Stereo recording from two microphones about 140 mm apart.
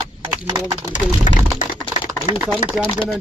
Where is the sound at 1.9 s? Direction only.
45° left (ahead or behind).